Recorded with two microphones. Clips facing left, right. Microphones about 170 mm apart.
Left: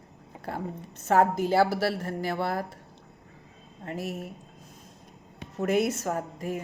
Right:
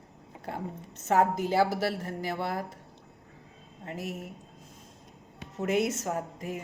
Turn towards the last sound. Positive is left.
turn(degrees=-20)  # may be behind; listen again after turning